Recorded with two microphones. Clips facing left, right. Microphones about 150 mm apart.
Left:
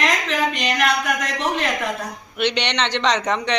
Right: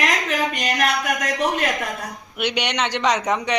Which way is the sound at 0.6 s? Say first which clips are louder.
Right 1 dB; 45° right (ahead or behind).